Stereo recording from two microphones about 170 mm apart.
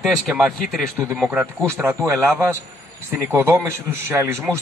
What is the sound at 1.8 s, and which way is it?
Speech, 15° right (ahead or behind).